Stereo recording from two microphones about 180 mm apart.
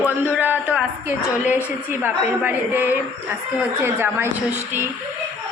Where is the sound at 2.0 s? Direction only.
10° right (ahead or behind).